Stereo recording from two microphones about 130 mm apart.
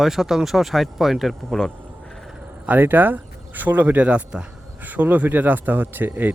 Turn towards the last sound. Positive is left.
turn(degrees=-15)  # may be behind; listen again after turning